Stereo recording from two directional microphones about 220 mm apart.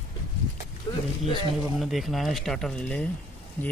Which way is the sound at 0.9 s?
15° left (ahead or behind).